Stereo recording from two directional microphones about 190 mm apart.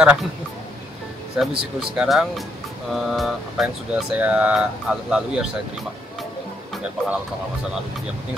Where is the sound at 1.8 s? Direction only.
Centre (ahead or behind).